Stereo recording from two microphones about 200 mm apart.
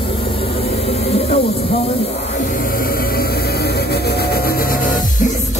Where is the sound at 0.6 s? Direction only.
30° left (ahead or behind).